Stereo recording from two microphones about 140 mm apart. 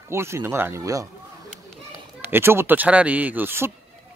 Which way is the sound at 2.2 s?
15° right (ahead or behind).